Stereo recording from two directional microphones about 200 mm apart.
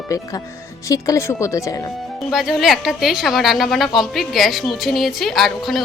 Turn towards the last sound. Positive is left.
turn(degrees=0)  # may be behind; listen again after turning